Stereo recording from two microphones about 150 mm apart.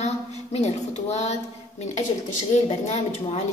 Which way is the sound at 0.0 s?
45° left (ahead or behind).